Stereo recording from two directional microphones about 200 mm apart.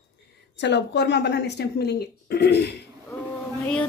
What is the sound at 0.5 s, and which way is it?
Speech, 60° left (ahead or behind).